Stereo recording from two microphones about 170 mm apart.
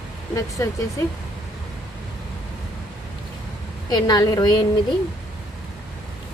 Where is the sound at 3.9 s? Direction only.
25° left (ahead or behind).